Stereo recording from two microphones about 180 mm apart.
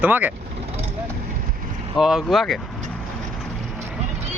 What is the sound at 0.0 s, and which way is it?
Speech, 10° right (ahead or behind).